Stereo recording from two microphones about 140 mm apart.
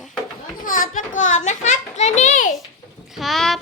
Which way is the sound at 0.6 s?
70° left (ahead or behind).